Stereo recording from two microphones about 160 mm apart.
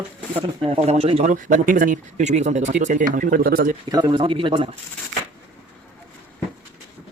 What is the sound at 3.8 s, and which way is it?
Speech, 25° right (ahead or behind).